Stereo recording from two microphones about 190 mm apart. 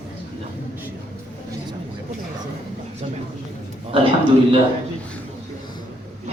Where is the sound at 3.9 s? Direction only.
30° right (ahead or behind).